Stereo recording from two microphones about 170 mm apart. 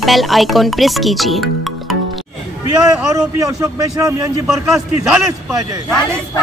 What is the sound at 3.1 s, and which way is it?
A man's voice, 20° right (ahead or behind).